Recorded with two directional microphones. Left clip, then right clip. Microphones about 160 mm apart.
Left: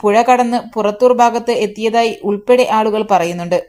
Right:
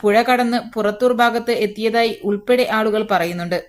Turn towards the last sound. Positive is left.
turn(degrees=10)  # may be behind; listen again after turning